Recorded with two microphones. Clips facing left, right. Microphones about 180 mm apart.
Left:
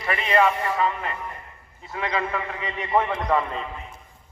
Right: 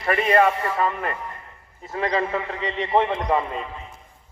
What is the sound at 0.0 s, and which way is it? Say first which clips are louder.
A man's voice: right 3 dB; 45° right (ahead or behind).